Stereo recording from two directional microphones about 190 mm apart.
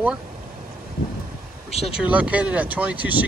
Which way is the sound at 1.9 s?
5° right (ahead or behind).